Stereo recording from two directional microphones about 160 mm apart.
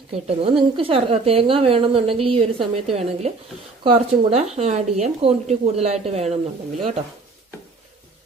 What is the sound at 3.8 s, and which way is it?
A woman's voice, 40° right (ahead or behind).